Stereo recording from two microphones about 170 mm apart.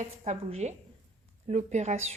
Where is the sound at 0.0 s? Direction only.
40° right (ahead or behind).